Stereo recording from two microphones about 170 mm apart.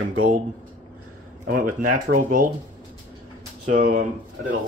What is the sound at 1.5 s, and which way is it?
Speech, 55° right (ahead or behind).